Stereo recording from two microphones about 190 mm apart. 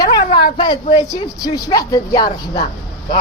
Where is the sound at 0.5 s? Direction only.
25° left (ahead or behind).